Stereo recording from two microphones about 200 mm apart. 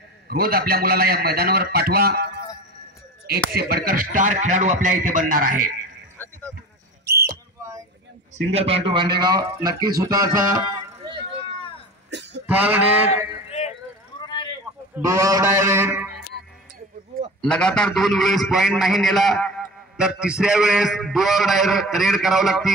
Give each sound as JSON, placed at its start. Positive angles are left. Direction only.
{"t": 0.3, "sound": "a man's voice", "side_deg": -50}
{"t": 3.5, "sound": "a man's voice", "side_deg": -50}
{"t": 6.1, "sound": "a sound", "side_deg": 10}
{"t": 7.1, "sound": "a sound", "side_deg": -50}
{"t": 8.5, "sound": "a man's voice", "side_deg": -30}
{"t": 12.1, "sound": "cough", "side_deg": -60}
{"t": 12.4, "sound": "mantra", "side_deg": -10}
{"t": 14.2, "sound": "a sound", "side_deg": 25}
{"t": 15.0, "sound": "mantra", "side_deg": -15}
{"t": 17.4, "sound": "a man's voice", "side_deg": 5}